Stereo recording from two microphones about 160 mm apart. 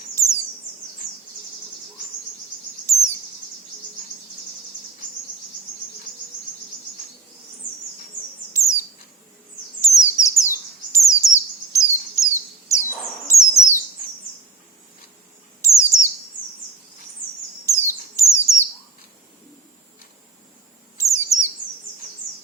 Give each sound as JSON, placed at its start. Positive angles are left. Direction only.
{"t": 0.1, "sound": "a sound", "side_deg": 15}
{"t": 8.5, "sound": "bird", "side_deg": 20}
{"t": 9.8, "sound": "chirp", "side_deg": 20}
{"t": 13.2, "sound": "bird", "side_deg": 20}
{"t": 15.6, "sound": "bird", "side_deg": 20}
{"t": 17.7, "sound": "bird", "side_deg": 15}
{"t": 21.0, "sound": "bird", "side_deg": 20}